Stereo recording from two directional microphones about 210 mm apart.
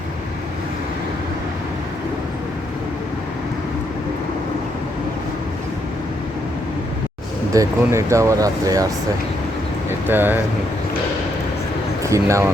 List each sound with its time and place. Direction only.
7.5 s speech: 15° right (ahead or behind)
10.1 s speech: 10° right (ahead or behind)
12.0 s speech: 15° right (ahead or behind)